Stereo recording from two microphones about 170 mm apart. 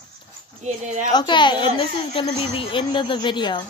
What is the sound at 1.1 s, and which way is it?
A woman's voice, 25° left (ahead or behind).